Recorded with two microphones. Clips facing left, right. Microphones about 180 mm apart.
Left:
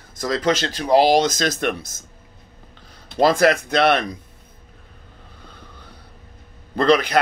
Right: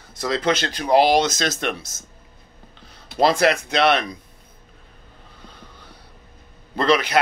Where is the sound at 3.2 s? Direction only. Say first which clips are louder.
Left 2 dB; 50° left (ahead or behind).